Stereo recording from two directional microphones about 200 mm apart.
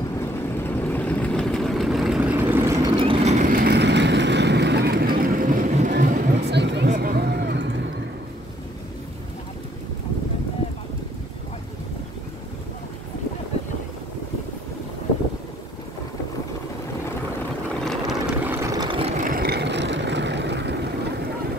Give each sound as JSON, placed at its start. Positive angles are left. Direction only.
{"t": 0.2, "sound": "vehicle", "side_deg": 10}
{"t": 3.0, "sound": "vehicle", "side_deg": -30}
{"t": 5.9, "sound": "a sound", "side_deg": -50}
{"t": 7.0, "sound": "vehicle", "side_deg": -50}
{"t": 17.6, "sound": "vehicle", "side_deg": 5}
{"t": 19.2, "sound": "vehicle", "side_deg": -50}